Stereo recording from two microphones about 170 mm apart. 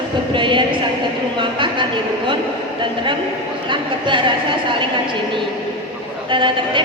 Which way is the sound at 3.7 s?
30° right (ahead or behind).